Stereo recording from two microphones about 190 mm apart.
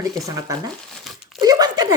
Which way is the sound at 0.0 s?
15° right (ahead or behind).